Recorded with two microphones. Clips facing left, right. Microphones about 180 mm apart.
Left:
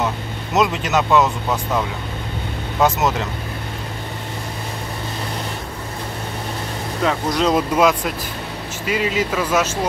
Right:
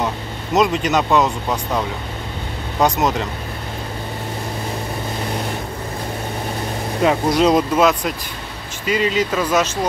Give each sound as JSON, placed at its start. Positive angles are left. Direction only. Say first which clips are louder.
{"t": 0.6, "sound": "speech", "louder": "right 2 dB", "side_deg": 5}
{"t": 2.8, "sound": "speech", "louder": "right 1 dB", "side_deg": 5}
{"t": 7.0, "sound": "speech", "louder": "right 4 dB", "side_deg": -15}
{"t": 7.4, "sound": "speech", "louder": "even", "side_deg": 5}